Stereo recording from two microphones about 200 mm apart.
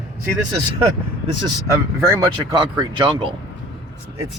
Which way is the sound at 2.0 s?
15° right (ahead or behind).